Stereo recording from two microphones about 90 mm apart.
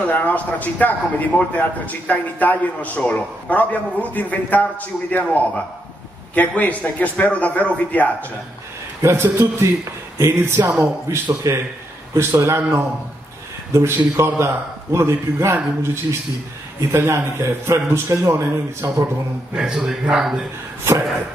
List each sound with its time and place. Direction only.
0.0 s a man's voice: 15° left (ahead or behind)
9.0 s a man's voice: 30° right (ahead or behind)
13.7 s a man's voice: 30° right (ahead or behind)
19.5 s a man's voice: 5° right (ahead or behind)